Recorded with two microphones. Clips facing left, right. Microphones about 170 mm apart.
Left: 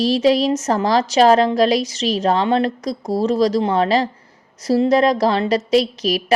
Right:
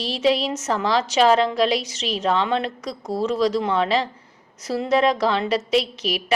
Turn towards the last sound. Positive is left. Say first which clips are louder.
# left 5 dB
turn(degrees=40)  # may be behind; listen again after turning